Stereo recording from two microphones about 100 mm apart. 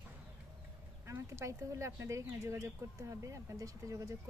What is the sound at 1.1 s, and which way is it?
Speech, 30° right (ahead or behind).